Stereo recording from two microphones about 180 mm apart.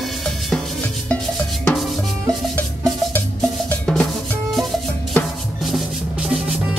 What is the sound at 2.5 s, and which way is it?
Music, 10° left (ahead or behind).